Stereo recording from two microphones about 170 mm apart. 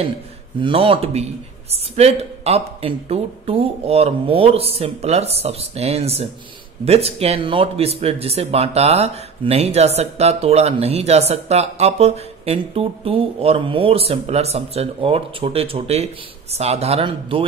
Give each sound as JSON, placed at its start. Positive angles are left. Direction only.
{"t": 0.6, "sound": "speech", "side_deg": -30}